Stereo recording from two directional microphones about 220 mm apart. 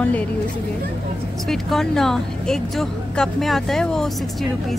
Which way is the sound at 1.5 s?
Centre (ahead or behind).